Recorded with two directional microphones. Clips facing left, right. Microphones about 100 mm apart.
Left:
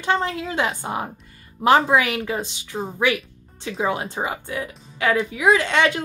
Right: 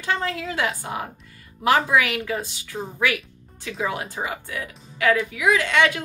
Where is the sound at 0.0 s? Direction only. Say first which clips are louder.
Left 3 dB; 25° left (ahead or behind).